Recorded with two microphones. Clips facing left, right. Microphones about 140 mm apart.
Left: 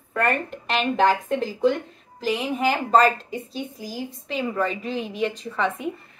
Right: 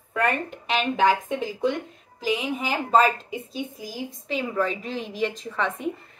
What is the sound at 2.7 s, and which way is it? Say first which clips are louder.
Speech: left 2 dB; 5° right (ahead or behind).